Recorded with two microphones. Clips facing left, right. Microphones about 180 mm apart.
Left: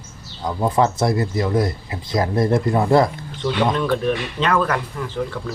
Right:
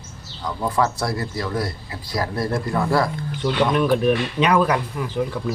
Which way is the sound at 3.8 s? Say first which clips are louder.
Right 2 dB; 15° right (ahead or behind).